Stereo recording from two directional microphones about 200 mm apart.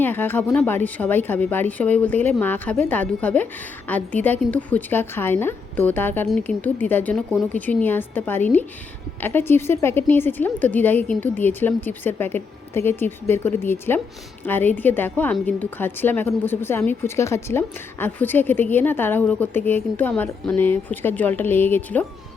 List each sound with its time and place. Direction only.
0.0 s a woman's voice: 10° left (ahead or behind)